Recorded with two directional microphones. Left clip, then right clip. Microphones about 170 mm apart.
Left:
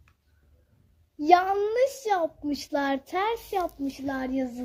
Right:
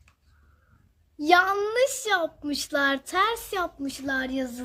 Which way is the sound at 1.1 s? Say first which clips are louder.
Even; 25° right (ahead or behind).